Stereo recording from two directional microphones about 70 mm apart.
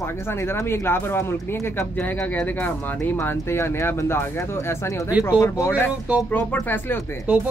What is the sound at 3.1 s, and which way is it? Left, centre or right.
Speech, left.